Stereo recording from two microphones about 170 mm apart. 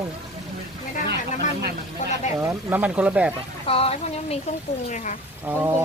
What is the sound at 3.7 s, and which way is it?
Speech, 35° left (ahead or behind).